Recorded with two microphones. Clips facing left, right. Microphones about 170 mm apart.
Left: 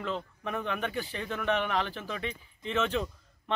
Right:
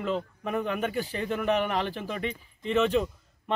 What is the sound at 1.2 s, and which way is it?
Speech, 10° right (ahead or behind).